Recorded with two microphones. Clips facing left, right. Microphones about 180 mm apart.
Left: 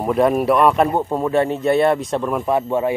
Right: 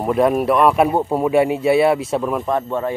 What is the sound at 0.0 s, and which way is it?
Speech, centre (ahead or behind).